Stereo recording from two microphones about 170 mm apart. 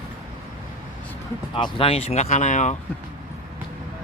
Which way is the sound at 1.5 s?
30° left (ahead or behind).